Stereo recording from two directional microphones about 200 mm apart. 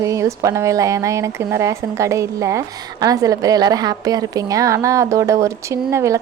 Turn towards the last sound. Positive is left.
turn(degrees=-15)  # may be behind; listen again after turning